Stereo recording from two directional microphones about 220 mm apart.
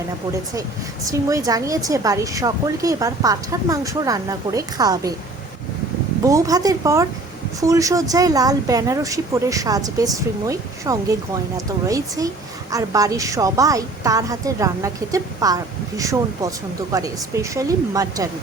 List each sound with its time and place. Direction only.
1.0 s speech: 15° right (ahead or behind)
6.2 s speech: 15° right (ahead or behind)